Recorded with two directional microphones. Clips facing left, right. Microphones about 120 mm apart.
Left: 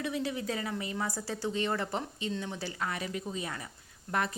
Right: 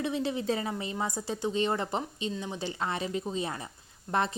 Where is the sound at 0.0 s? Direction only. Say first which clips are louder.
Right 3 dB; 25° right (ahead or behind).